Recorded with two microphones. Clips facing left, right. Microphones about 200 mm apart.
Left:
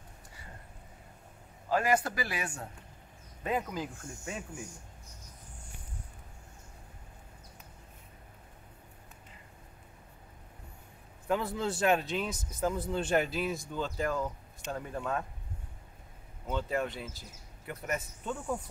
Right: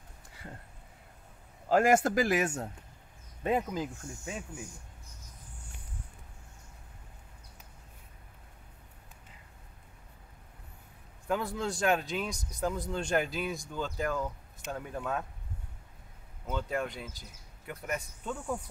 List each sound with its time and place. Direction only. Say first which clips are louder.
1.7 s speech: right 4 dB; 45° right (ahead or behind)
3.4 s speech: right 3 dB; 25° right (ahead or behind)
11.2 s speech: left 1 dB; centre (ahead or behind)
16.4 s speech: left 1 dB; centre (ahead or behind)